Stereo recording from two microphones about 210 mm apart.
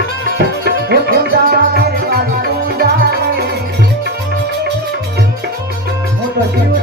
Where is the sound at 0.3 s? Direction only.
50° right (ahead or behind).